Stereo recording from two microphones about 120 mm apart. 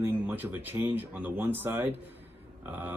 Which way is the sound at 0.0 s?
15° right (ahead or behind).